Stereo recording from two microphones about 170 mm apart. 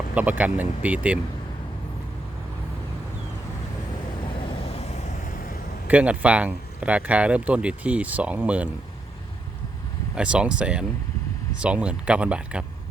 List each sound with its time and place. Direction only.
0.1 s speech: 10° right (ahead or behind)
4.4 s vehicle: 35° left (ahead or behind)
5.9 s speech: 10° right (ahead or behind)
10.2 s speech: 5° right (ahead or behind)